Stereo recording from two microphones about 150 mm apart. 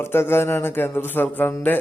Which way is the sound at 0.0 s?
15° left (ahead or behind).